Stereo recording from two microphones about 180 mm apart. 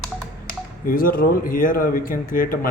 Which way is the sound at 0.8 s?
55° left (ahead or behind).